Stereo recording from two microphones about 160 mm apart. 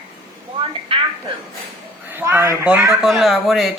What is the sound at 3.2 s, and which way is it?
Speech, centre (ahead or behind).